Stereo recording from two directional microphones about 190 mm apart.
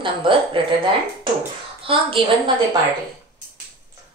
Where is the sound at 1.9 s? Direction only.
30° right (ahead or behind).